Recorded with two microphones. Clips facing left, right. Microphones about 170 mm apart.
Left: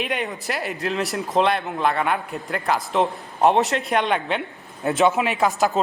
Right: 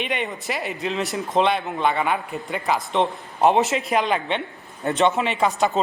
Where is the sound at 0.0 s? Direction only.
Centre (ahead or behind).